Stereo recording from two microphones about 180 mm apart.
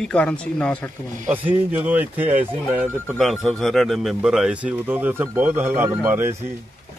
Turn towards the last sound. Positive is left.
turn(degrees=-15)  # may be behind; listen again after turning